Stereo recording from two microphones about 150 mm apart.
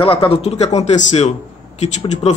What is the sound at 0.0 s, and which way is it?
Speech, 35° left (ahead or behind).